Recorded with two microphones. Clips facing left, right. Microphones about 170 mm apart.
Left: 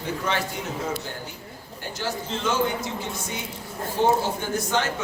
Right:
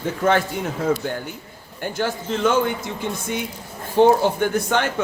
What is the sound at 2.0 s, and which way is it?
Speech, 55° right (ahead or behind).